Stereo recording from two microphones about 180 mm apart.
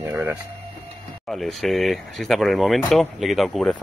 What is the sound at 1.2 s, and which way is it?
Speech, centre (ahead or behind).